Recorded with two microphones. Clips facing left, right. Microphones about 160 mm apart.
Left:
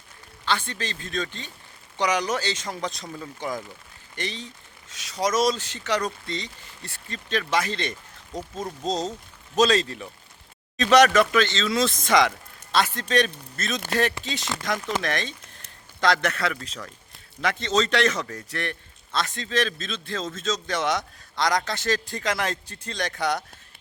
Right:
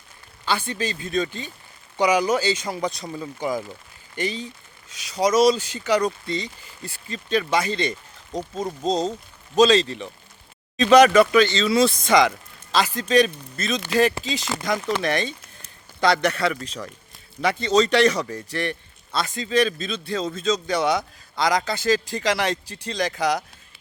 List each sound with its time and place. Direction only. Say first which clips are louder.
0.4 s a man's voice: right 3 dB; 5° right (ahead or behind)
8.8 s speech: right 4 dB; 30° right (ahead or behind)
9.6 s a man's voice: right 4 dB; centre (ahead or behind)